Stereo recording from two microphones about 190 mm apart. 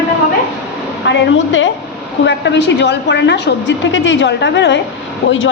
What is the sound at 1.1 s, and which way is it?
Speech, 85° left.